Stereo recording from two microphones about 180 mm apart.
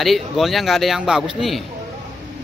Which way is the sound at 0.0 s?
Centre (ahead or behind).